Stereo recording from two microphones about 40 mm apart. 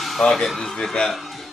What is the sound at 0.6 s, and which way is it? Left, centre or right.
Speech, centre.